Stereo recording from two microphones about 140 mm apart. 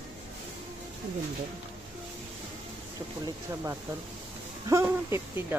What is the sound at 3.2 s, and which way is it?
Speech, 20° right (ahead or behind).